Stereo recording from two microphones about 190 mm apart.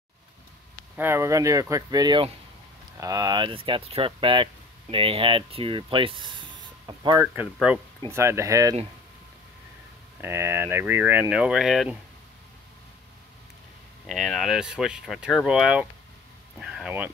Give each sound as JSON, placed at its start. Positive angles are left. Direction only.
{"t": 0.9, "sound": "speech", "side_deg": -10}
{"t": 7.7, "sound": "speech", "side_deg": -10}
{"t": 10.2, "sound": "speech", "side_deg": -15}
{"t": 14.0, "sound": "speech", "side_deg": 0}
{"t": 16.5, "sound": "a sound", "side_deg": 0}